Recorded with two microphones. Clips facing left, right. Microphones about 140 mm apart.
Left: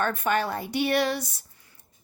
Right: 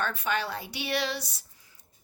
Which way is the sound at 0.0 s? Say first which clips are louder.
Left 5 dB; 50° left (ahead or behind).